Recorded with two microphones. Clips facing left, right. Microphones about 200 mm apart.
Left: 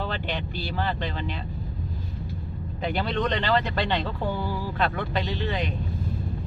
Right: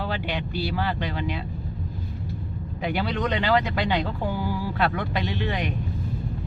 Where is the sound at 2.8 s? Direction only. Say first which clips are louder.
Even; 10° right (ahead or behind).